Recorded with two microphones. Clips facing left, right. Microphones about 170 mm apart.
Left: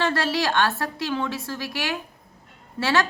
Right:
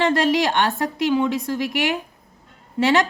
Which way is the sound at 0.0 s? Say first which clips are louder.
Right 5 dB; 20° right (ahead or behind).